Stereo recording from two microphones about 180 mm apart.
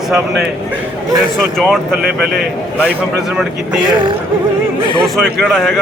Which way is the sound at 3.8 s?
25° right (ahead or behind).